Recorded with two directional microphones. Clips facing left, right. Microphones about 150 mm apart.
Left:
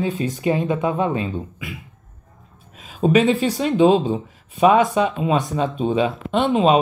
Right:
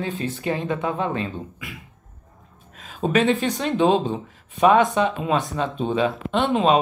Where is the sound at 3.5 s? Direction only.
10° left (ahead or behind).